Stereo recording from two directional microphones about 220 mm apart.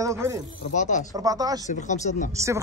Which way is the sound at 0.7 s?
35° left (ahead or behind).